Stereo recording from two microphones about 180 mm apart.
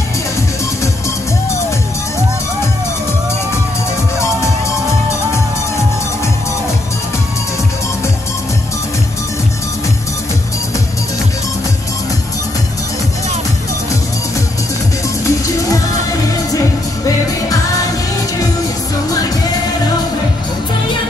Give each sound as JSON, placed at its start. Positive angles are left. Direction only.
{"t": 15.2, "sound": "music", "side_deg": 20}